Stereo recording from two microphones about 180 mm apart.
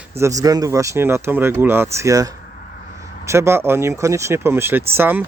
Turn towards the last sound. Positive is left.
turn(degrees=-10)  # may be behind; listen again after turning